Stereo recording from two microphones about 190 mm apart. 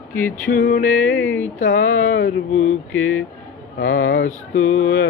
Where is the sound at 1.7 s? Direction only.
40° left (ahead or behind).